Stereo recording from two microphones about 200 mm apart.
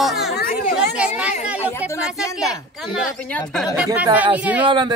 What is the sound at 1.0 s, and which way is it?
Chatter, 5° right (ahead or behind).